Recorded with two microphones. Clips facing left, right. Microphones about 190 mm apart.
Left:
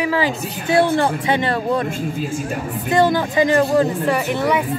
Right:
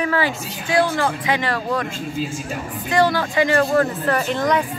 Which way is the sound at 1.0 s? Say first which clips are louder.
Left 3 dB; 25° left (ahead or behind).